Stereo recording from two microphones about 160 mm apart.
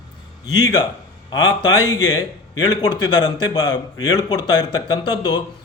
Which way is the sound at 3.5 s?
25° left (ahead or behind).